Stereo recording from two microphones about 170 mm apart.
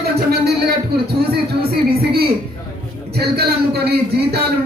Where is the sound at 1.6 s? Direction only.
65° right (ahead or behind).